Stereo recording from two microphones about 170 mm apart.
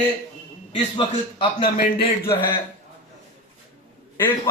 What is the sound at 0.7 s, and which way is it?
A man's voice, 30° left (ahead or behind).